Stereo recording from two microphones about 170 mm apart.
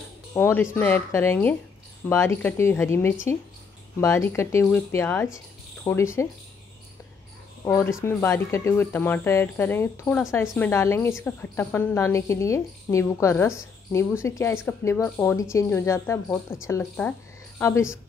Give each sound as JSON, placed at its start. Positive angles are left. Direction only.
{"t": 0.3, "sound": "a woman's voice", "side_deg": 15}
{"t": 7.6, "sound": "a woman's voice", "side_deg": 15}